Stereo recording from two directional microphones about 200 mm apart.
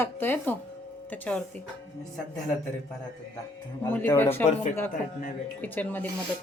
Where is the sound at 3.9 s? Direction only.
10° left (ahead or behind).